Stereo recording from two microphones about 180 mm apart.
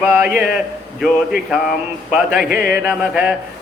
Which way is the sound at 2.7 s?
5° right (ahead or behind).